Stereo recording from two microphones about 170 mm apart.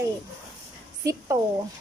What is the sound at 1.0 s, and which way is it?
Speech, 20° right (ahead or behind).